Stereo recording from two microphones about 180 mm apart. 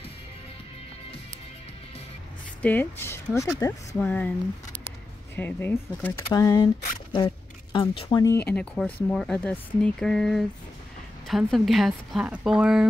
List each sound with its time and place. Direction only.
2.6 s speech: 10° left (ahead or behind)
8.5 s speech: 5° left (ahead or behind)